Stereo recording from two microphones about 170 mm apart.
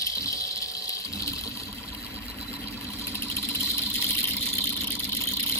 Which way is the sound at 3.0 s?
15° left (ahead or behind).